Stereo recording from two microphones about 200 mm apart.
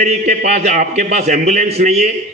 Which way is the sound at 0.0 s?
35° right (ahead or behind).